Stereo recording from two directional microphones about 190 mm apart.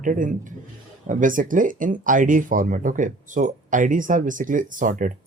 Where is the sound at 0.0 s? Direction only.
45° right (ahead or behind).